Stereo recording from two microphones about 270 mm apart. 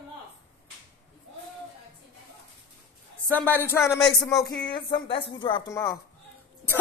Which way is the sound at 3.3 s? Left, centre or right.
Centre.